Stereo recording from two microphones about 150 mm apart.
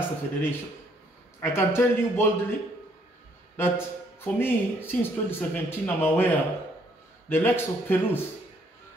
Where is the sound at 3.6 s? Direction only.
15° left (ahead or behind).